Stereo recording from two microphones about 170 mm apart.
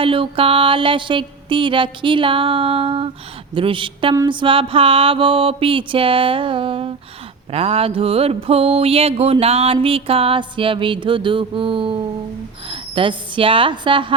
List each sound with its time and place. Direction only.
0.0 s mantra: 30° right (ahead or behind)
12.6 s speech: 30° right (ahead or behind)